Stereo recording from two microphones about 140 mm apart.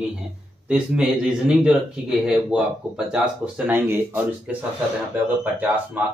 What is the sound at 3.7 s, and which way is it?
Speech, 15° right (ahead or behind).